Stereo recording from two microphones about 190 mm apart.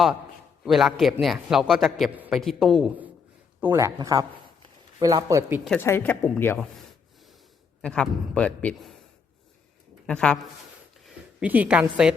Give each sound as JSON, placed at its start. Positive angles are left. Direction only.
{"t": 0.6, "sound": "a man's voice", "side_deg": 0}
{"t": 3.6, "sound": "speech", "side_deg": -15}
{"t": 5.8, "sound": "speech", "side_deg": 10}
{"t": 7.8, "sound": "a man's voice", "side_deg": 5}
{"t": 10.1, "sound": "a man's voice", "side_deg": 5}
{"t": 11.0, "sound": "a woman's voice", "side_deg": -5}